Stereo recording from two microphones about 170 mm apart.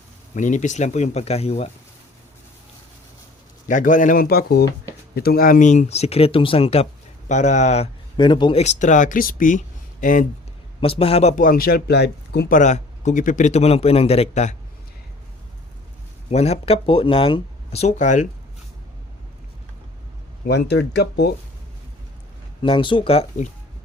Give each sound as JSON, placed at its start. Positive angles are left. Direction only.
{"t": 0.3, "sound": "speech", "side_deg": 45}
{"t": 3.7, "sound": "a man's voice", "side_deg": 50}
{"t": 8.1, "sound": "speech", "side_deg": 25}
{"t": 8.8, "sound": "speech", "side_deg": 45}
{"t": 10.8, "sound": "a man's voice", "side_deg": 35}
{"t": 12.5, "sound": "a man's voice", "side_deg": 45}
{"t": 16.3, "sound": "a man's voice", "side_deg": 40}
{"t": 20.5, "sound": "speech", "side_deg": 85}
{"t": 22.6, "sound": "a man's voice", "side_deg": 30}